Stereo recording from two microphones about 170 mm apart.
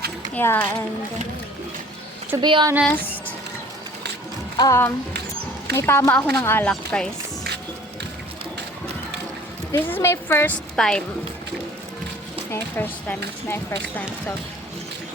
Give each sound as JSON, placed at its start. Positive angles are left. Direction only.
{"t": 0.3, "sound": "a woman's voice", "side_deg": 10}
{"t": 2.4, "sound": "speech", "side_deg": -25}
{"t": 4.5, "sound": "a woman's voice", "side_deg": 20}
{"t": 9.7, "sound": "a woman's voice", "side_deg": 15}
{"t": 12.5, "sound": "a woman's voice", "side_deg": 15}